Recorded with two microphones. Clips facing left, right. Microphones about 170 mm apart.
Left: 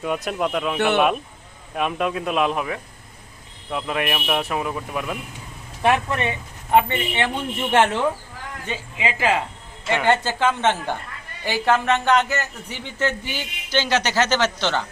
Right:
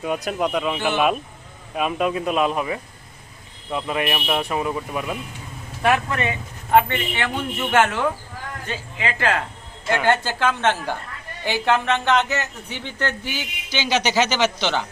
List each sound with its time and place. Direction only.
0.0 s speech: centre (ahead or behind)
0.8 s a man's voice: 65° left (ahead or behind)
1.7 s speech: centre (ahead or behind)
5.8 s a man's voice: 25° left (ahead or behind)
8.7 s speech: 5° left (ahead or behind)
13.3 s a man's voice: 10° right (ahead or behind)